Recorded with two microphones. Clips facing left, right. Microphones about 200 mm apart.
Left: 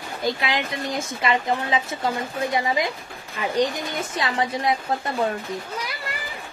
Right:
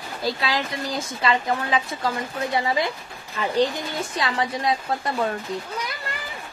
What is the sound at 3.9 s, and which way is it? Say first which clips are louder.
Speech: even; 25° left (ahead or behind).